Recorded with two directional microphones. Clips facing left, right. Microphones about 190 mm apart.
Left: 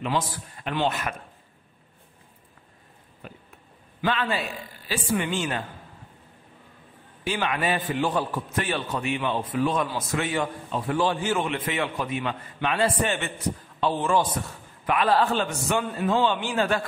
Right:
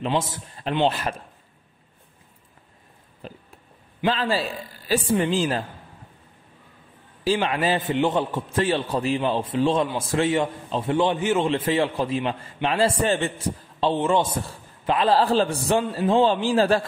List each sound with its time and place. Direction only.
0.0 s a man's voice: 25° right (ahead or behind)
3.2 s a sound: 30° right (ahead or behind)
4.0 s a man's voice: 30° right (ahead or behind)
7.2 s a man's voice: 30° right (ahead or behind)